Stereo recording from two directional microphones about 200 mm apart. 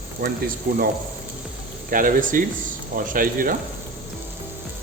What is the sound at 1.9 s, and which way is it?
Speech, 45° right (ahead or behind).